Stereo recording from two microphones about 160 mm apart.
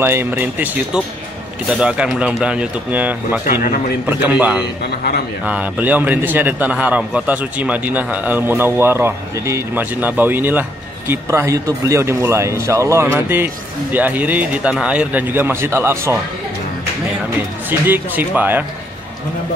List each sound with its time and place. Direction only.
0.0 s a man's voice: 15° right (ahead or behind)
17.6 s a man's voice: 10° right (ahead or behind)